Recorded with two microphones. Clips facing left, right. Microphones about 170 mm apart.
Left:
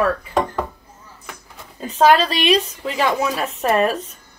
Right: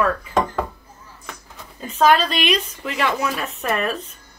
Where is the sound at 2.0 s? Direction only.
35° left (ahead or behind).